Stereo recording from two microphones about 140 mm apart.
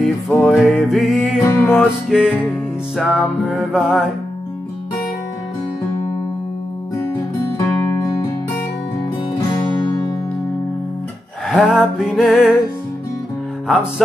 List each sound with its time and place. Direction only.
0.0 s music: 5° left (ahead or behind)
1.4 s music: 20° left (ahead or behind)
1.8 s music: centre (ahead or behind)
7.5 s music: 25° left (ahead or behind)
11.4 s music: 5° right (ahead or behind)